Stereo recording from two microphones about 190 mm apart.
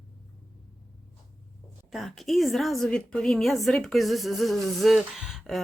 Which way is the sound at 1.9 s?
Centre (ahead or behind).